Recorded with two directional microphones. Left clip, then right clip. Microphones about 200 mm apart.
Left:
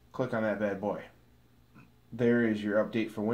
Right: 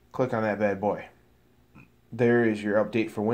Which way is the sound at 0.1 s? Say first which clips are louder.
Right 5 dB; 45° right (ahead or behind).